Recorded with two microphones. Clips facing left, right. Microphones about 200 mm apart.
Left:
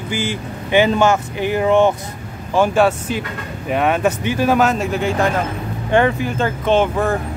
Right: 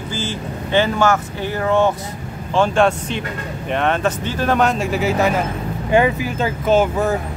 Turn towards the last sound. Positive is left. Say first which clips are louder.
# even
turn(degrees=-5)  # may be behind; listen again after turning